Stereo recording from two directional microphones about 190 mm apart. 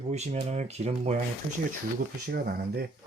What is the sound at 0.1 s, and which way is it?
Speech, 35° right (ahead or behind).